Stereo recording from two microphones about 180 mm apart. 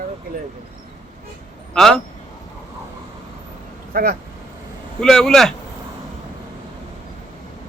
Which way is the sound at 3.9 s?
55° right (ahead or behind).